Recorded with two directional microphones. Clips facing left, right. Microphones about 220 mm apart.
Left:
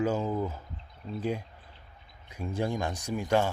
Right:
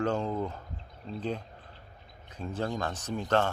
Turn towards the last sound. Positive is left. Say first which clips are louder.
# left 1 dB
turn(degrees=10)  # may be behind; listen again after turning